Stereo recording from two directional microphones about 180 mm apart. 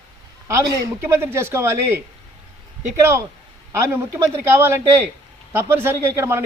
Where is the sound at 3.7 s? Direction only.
15° right (ahead or behind).